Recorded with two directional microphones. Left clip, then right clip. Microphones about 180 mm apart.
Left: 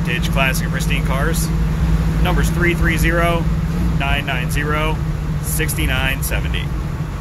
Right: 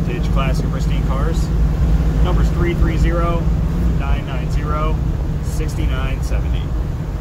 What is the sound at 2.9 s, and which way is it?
Speech, 20° left (ahead or behind).